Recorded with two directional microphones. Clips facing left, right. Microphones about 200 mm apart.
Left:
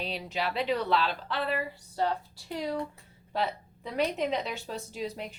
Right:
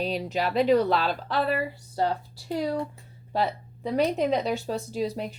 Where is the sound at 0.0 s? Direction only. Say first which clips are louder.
Right 6 dB; 45° right (ahead or behind).